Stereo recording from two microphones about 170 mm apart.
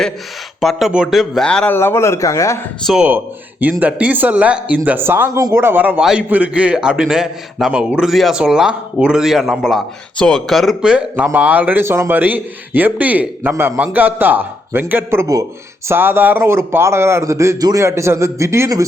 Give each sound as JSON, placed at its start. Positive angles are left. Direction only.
{"t": 0.6, "sound": "speech", "side_deg": 0}
{"t": 2.8, "sound": "speech", "side_deg": 0}